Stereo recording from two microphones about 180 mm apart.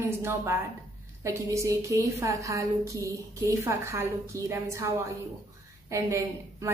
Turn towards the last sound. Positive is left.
turn(degrees=-15)  # may be behind; listen again after turning